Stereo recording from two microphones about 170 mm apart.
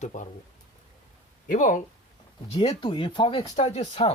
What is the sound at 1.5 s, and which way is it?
Speech, 50° left (ahead or behind).